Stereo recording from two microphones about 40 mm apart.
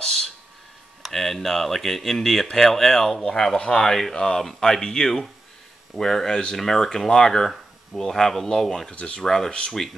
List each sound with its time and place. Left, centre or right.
0.0 s a sound: centre
1.0 s speech: centre
8.9 s speech: left
9.2 s speech: centre